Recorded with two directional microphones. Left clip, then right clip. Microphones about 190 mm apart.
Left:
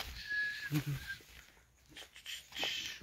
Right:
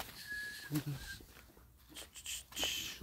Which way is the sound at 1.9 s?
20° right (ahead or behind).